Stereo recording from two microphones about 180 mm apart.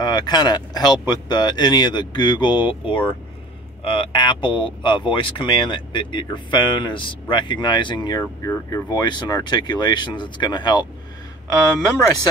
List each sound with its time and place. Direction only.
0.0 s speech: 25° left (ahead or behind)